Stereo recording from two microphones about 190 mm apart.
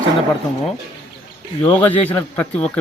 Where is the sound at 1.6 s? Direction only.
10° left (ahead or behind).